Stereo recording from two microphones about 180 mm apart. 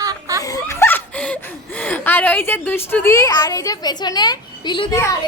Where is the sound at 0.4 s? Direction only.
15° left (ahead or behind).